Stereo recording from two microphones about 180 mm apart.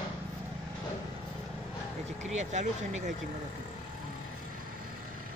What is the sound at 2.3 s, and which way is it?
Speech, 40° right (ahead or behind).